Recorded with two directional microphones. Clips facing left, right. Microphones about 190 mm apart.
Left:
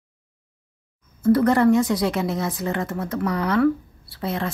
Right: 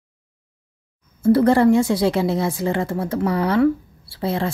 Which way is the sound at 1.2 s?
30° right (ahead or behind).